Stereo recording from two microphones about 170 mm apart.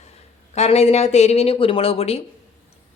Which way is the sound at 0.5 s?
40° left (ahead or behind).